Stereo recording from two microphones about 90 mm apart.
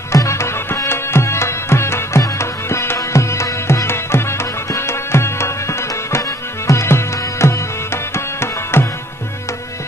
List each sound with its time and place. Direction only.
0.1 s music: 35° left (ahead or behind)